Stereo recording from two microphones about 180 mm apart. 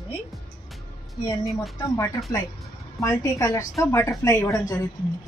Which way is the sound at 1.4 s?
Centre (ahead or behind).